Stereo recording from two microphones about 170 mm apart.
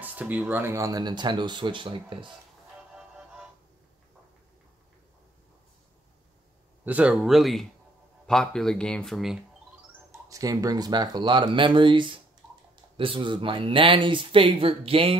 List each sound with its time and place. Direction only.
0.0 s speech: 10° right (ahead or behind); by 2.1 s 30° right (ahead or behind)
6.8 s speech: 10° right (ahead or behind)
10.3 s speech: 20° right (ahead or behind)